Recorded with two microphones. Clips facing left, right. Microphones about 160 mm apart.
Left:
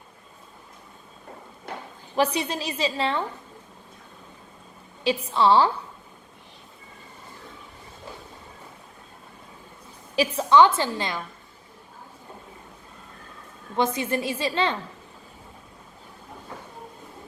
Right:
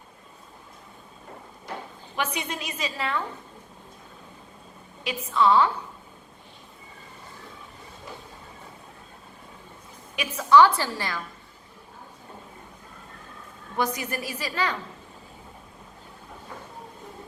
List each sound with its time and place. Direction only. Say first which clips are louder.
2.1 s a woman's voice: left 6 dB; 35° left (ahead or behind)
5.0 s a woman's voice: left 2 dB; 30° left (ahead or behind)
10.2 s a woman's voice: left 1 dB; 25° left (ahead or behind)
13.7 s a woman's voice: left 4 dB; 25° left (ahead or behind)